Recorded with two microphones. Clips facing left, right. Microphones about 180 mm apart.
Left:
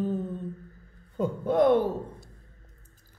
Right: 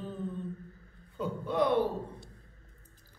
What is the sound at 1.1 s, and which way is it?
Speech, 45° left (ahead or behind).